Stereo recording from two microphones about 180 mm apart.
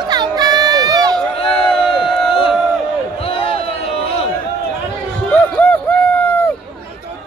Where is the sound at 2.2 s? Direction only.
30° left (ahead or behind).